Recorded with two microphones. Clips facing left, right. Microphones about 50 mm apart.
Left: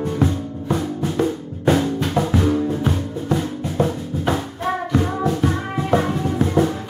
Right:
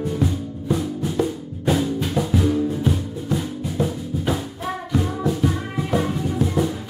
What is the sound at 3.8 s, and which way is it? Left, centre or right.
Music, centre.